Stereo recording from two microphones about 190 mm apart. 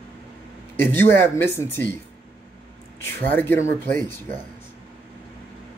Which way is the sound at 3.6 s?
45° right (ahead or behind).